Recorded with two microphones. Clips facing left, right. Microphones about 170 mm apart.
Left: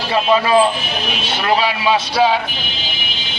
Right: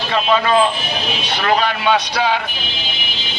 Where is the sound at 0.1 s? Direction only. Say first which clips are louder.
Left 2 dB; 10° left (ahead or behind).